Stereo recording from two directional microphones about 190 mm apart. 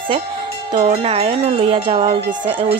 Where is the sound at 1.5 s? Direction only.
25° right (ahead or behind).